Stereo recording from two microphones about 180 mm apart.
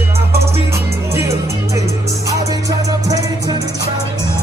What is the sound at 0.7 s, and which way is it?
Music, 15° right (ahead or behind).